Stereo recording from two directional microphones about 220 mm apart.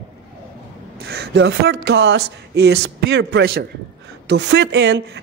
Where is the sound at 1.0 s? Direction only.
50° right (ahead or behind).